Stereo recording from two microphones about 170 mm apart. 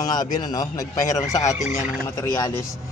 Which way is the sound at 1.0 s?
45° left (ahead or behind).